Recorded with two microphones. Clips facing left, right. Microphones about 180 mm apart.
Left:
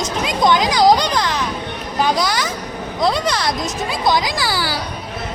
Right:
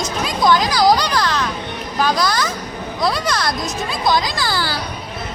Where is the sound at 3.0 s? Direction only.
20° left (ahead or behind).